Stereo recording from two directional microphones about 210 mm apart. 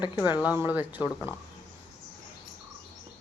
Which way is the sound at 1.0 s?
20° left (ahead or behind).